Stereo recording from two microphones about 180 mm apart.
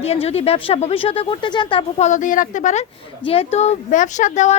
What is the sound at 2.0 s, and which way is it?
Speech, 45° left (ahead or behind).